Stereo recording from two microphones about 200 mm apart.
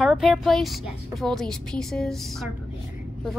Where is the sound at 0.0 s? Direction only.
5° right (ahead or behind).